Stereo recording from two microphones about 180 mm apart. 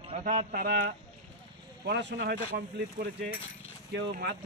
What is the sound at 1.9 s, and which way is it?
Speech, 75° right (ahead or behind).